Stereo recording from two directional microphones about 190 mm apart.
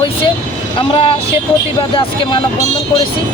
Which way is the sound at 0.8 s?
25° left (ahead or behind).